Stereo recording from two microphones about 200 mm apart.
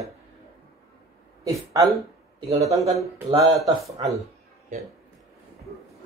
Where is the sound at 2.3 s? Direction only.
30° right (ahead or behind).